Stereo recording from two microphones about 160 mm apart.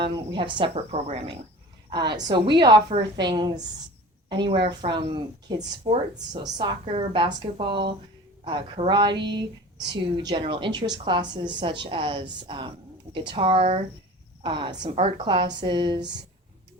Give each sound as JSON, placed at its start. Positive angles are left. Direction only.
{"t": 0.0, "sound": "speech", "side_deg": -30}
{"t": 1.9, "sound": "a woman's voice", "side_deg": -30}
{"t": 14.8, "sound": "speech", "side_deg": -40}